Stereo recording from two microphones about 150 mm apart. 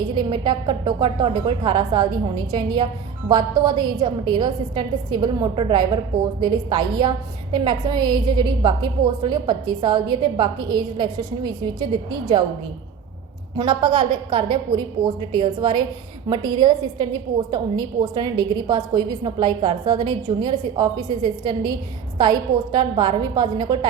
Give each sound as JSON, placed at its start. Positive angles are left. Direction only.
{"t": 0.2, "sound": "a woman's voice", "side_deg": -30}
{"t": 13.6, "sound": "a woman's voice", "side_deg": -30}